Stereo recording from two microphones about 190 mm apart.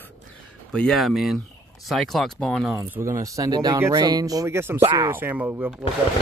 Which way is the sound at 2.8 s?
15° right (ahead or behind).